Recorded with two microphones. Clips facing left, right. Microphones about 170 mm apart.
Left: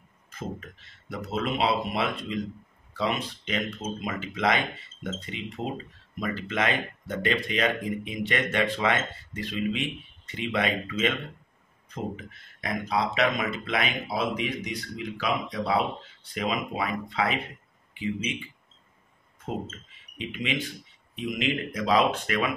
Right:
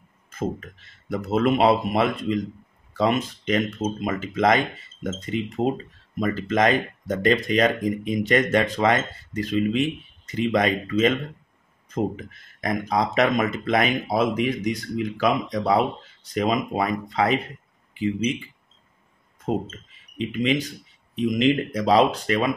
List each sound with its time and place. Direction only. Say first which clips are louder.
0.3 s a sound: right 9 dB; 45° right (ahead or behind)
1.3 s speech: right 8 dB; 50° right (ahead or behind)
12.5 s speech: right 4 dB; 45° right (ahead or behind)
20.2 s speech: right 8 dB; 40° right (ahead or behind)